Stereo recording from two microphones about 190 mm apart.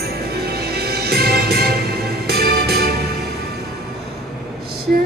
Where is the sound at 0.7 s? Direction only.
55° right (ahead or behind).